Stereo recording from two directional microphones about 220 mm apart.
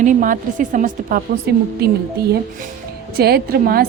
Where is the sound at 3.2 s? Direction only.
45° right (ahead or behind).